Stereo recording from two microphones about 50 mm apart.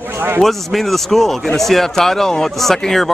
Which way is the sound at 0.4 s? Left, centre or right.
Centre.